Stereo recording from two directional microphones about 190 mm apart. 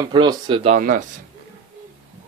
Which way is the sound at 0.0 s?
20° right (ahead or behind).